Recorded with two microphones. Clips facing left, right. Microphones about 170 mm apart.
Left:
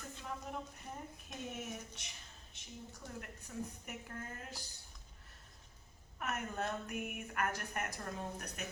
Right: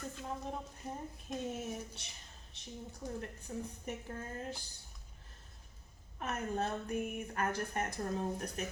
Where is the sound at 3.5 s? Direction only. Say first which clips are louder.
Right 1 dB; 30° right (ahead or behind).